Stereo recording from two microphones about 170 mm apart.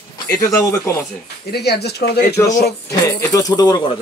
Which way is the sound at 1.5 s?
75° left (ahead or behind).